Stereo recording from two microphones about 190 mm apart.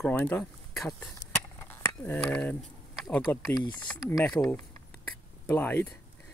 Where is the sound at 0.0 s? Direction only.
10° left (ahead or behind).